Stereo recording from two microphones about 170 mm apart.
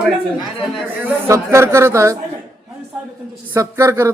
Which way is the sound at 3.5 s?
15° right (ahead or behind).